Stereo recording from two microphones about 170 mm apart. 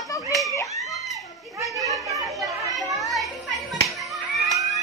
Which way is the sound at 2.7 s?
Centre (ahead or behind).